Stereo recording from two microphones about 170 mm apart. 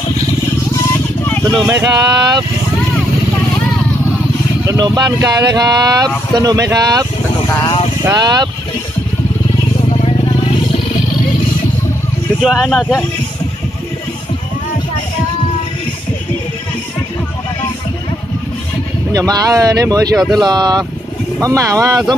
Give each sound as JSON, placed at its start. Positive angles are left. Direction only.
{"t": 1.7, "sound": "speech", "side_deg": -20}
{"t": 4.6, "sound": "speech", "side_deg": -20}
{"t": 7.6, "sound": "vehicle", "side_deg": 30}
{"t": 8.0, "sound": "speech", "side_deg": -20}
{"t": 9.9, "sound": "vehicle", "side_deg": 35}
{"t": 12.4, "sound": "speech", "side_deg": 0}
{"t": 19.1, "sound": "speech", "side_deg": -20}